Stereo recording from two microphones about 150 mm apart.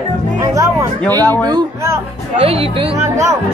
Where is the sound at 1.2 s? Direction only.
15° left (ahead or behind).